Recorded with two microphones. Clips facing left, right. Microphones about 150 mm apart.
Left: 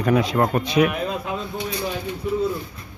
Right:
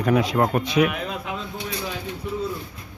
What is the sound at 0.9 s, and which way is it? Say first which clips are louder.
Speech: left 3 dB; 35° left (ahead or behind).